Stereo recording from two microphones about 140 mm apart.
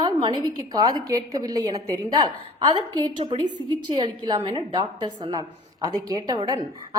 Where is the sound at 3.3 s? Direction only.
35° right (ahead or behind).